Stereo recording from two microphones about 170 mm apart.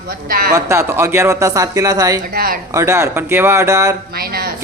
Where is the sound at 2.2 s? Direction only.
60° right (ahead or behind).